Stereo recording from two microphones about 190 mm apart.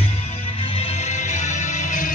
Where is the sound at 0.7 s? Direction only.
35° left (ahead or behind).